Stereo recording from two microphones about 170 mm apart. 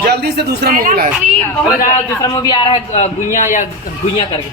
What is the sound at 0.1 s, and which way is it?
A man's voice, 75° right (ahead or behind).